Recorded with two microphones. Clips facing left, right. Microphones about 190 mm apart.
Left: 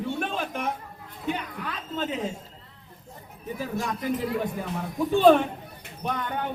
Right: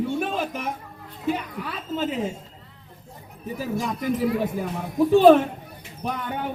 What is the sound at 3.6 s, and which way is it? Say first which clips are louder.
Speech: right 3 dB; 5° right (ahead or behind).